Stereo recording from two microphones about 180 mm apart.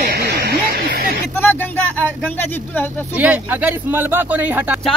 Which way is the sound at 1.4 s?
10° left (ahead or behind).